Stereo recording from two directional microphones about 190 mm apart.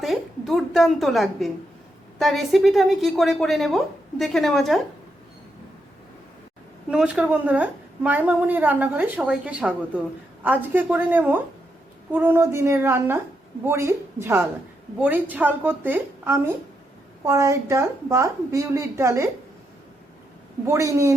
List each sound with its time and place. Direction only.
0.0 s a woman's voice: centre (ahead or behind)
6.9 s a woman's voice: 5° right (ahead or behind)
20.7 s a woman's voice: 15° right (ahead or behind)